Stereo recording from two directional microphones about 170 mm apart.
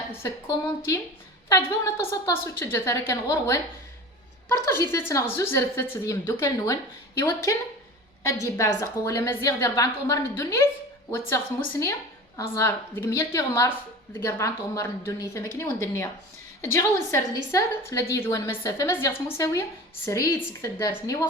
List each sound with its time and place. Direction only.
0.1 s a woman's voice: 15° left (ahead or behind)
8.5 s a woman's voice: 20° left (ahead or behind)